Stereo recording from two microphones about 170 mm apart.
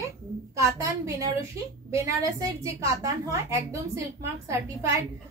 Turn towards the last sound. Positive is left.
turn(degrees=-20)  # may be behind; listen again after turning